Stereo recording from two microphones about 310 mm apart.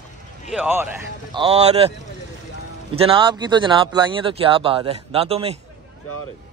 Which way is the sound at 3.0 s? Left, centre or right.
Centre.